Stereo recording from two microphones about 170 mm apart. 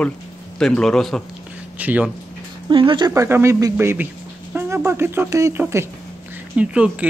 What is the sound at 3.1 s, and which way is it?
Speech, 15° right (ahead or behind).